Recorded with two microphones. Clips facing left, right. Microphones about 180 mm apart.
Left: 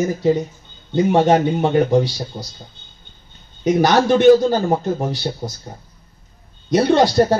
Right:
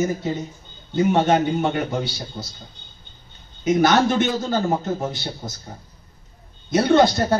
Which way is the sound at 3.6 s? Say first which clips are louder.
Left 2 dB; 35° left (ahead or behind).